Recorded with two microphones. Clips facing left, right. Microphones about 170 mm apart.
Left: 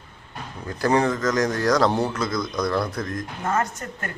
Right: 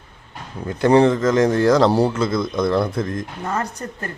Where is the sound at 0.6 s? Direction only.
25° right (ahead or behind).